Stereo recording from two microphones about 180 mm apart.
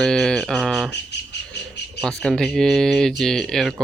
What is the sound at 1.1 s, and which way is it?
Cricket, 70° left (ahead or behind).